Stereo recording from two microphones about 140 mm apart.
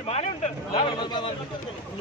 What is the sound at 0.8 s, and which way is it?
Speech, 35° left (ahead or behind).